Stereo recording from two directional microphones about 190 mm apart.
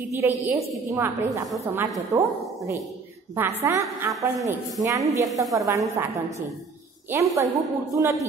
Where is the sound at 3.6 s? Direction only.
15° right (ahead or behind).